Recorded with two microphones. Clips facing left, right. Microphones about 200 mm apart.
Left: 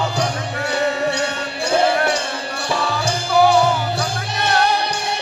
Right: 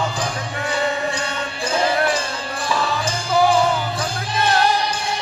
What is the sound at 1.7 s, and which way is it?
Music, 65° left (ahead or behind).